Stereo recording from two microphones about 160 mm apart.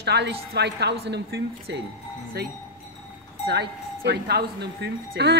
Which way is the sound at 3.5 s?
90° right.